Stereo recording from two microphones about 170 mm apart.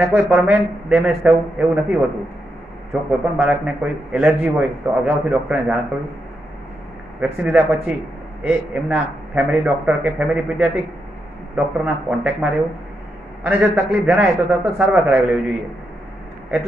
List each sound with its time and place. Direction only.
0.0 s a man's voice: 10° right (ahead or behind)
7.2 s a man's voice: 10° right (ahead or behind)